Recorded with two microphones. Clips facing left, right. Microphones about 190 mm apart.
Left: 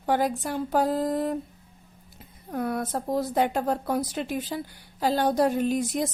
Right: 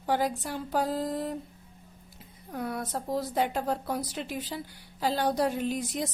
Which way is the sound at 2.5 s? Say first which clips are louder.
Left 5 dB; 50° left (ahead or behind).